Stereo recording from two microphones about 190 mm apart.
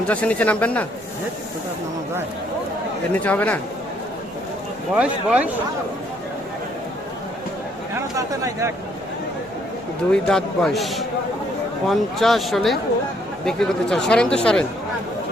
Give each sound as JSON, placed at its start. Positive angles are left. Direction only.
{"t": 0.1, "sound": "speech", "side_deg": 5}
{"t": 3.1, "sound": "speech", "side_deg": 10}
{"t": 4.9, "sound": "speech", "side_deg": -5}
{"t": 8.1, "sound": "speech", "side_deg": -15}
{"t": 10.1, "sound": "speech", "side_deg": 5}